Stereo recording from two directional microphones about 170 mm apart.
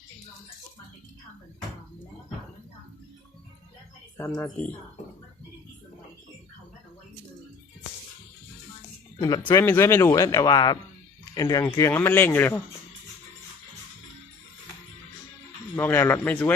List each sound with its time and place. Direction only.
4.2 s speech: 10° left (ahead or behind)
9.6 s speech: 15° left (ahead or behind)
15.7 s speech: 10° left (ahead or behind)